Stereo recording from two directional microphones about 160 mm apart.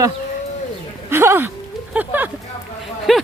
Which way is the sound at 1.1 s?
15° right (ahead or behind).